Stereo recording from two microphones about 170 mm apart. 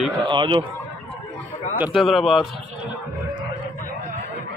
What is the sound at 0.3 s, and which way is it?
Speech, 30° right (ahead or behind).